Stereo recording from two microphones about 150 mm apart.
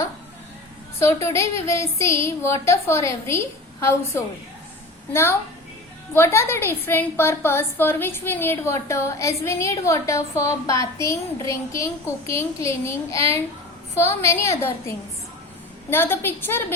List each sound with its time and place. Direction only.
0.9 s a woman's voice: 20° left (ahead or behind)